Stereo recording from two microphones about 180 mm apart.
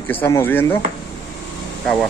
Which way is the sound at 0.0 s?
10° left (ahead or behind).